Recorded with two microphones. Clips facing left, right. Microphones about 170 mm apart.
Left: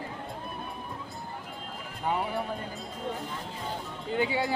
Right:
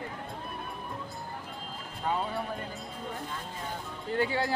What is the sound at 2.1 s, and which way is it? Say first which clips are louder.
Speech: left 2 dB; 10° left (ahead or behind).